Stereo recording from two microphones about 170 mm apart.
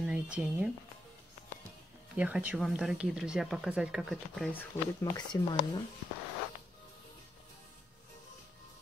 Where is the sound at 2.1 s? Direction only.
10° right (ahead or behind).